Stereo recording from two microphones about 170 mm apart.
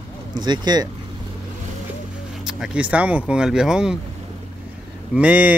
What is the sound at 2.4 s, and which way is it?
Speech, 5° right (ahead or behind).